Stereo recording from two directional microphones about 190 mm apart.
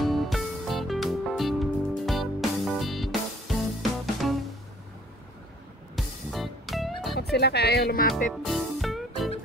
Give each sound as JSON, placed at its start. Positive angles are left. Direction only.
{"t": 0.0, "sound": "music", "side_deg": 0}
{"t": 5.9, "sound": "music", "side_deg": 0}
{"t": 7.3, "sound": "speech", "side_deg": 60}
{"t": 8.3, "sound": "music", "side_deg": 0}